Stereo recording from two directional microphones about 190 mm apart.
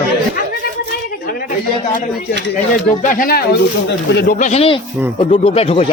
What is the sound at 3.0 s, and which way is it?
Speech, 45° left (ahead or behind).